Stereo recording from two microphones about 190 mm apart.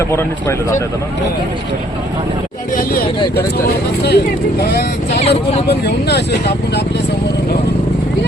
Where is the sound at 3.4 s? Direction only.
55° left (ahead or behind).